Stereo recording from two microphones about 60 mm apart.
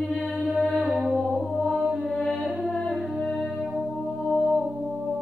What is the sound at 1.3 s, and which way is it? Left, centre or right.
Music, centre.